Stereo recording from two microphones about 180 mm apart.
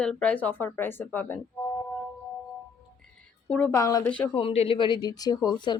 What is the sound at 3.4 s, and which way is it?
Speech, 5° left (ahead or behind).